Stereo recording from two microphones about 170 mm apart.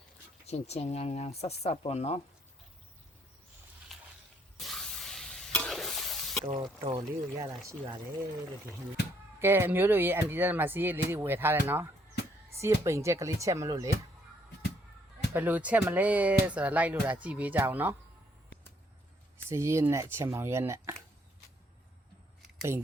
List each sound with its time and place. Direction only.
0.4 s speech: 40° left (ahead or behind)
3.9 s a sound: centre (ahead or behind)
4.5 s stir: centre (ahead or behind)
6.6 s speech: 25° right (ahead or behind)
9.4 s speech: 15° right (ahead or behind)
15.3 s speech: 10° right (ahead or behind)
19.5 s speech: 15° right (ahead or behind)